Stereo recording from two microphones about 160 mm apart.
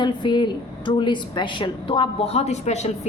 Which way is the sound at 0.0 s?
30° left (ahead or behind).